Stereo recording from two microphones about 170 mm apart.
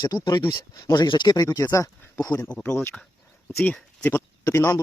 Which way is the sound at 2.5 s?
10° left (ahead or behind).